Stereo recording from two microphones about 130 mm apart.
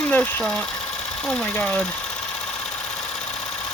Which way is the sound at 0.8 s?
50° left (ahead or behind).